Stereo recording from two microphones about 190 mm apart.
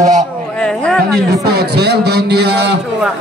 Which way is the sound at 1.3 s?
60° right (ahead or behind).